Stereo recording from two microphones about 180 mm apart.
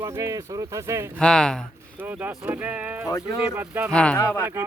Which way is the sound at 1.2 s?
5° left (ahead or behind).